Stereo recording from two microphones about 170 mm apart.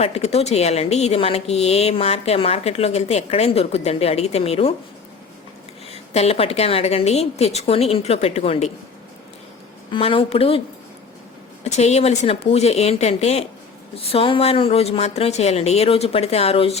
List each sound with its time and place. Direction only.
0.0 s a woman's voice: 40° left (ahead or behind)
5.9 s a woman's voice: 35° left (ahead or behind)
9.9 s a woman's voice: 30° left (ahead or behind)
11.6 s a woman's voice: 40° left (ahead or behind)